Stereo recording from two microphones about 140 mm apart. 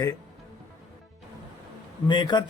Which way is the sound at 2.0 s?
30° left (ahead or behind).